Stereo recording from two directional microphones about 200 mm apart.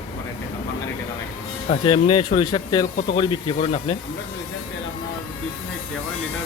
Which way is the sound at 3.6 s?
30° left (ahead or behind).